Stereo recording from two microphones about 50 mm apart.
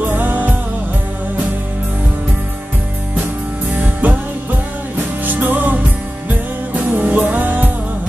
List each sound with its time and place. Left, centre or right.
0.0 s music: right
3.7 s music: right
5.2 s music: right